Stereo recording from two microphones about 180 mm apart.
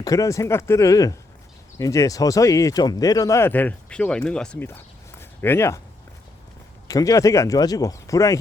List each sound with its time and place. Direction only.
0.0 s speech: 20° left (ahead or behind)
6.8 s speech: 20° left (ahead or behind)